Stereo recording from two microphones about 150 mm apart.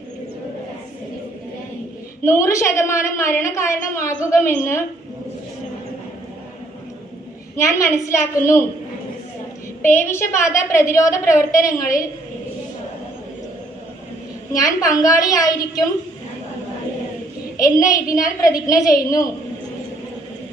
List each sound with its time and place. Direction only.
2.2 s a woman's voice: 20° left (ahead or behind)
7.5 s a woman's voice: 20° left (ahead or behind)
9.8 s a woman's voice: 15° left (ahead or behind)
14.8 s a woman's voice: 20° left (ahead or behind)
17.6 s a woman's voice: 20° left (ahead or behind)